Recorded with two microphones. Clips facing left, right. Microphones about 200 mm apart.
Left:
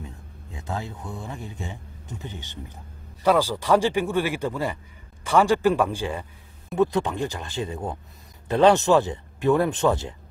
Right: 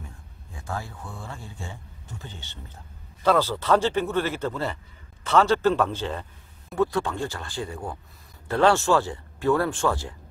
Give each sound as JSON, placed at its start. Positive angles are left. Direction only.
{"t": 0.0, "sound": "a man's voice", "side_deg": 20}